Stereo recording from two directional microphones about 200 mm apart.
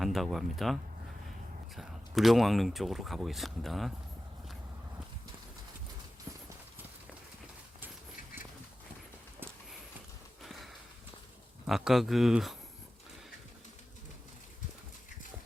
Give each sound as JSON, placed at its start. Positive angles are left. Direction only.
{"t": 0.0, "sound": "speech", "side_deg": 0}
{"t": 10.4, "sound": "a sound", "side_deg": 0}
{"t": 11.6, "sound": "speech", "side_deg": 0}